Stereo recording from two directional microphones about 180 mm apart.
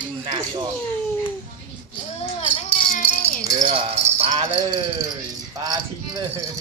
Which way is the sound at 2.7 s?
40° left (ahead or behind).